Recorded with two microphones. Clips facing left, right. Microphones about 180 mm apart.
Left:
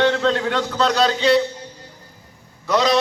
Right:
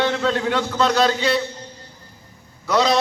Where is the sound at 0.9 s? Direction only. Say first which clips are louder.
Left 5 dB; 15° left (ahead or behind).